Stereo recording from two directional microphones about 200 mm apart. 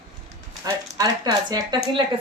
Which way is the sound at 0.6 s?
20° right (ahead or behind).